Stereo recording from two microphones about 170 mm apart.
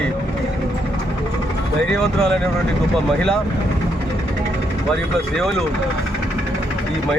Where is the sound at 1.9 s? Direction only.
5° left (ahead or behind).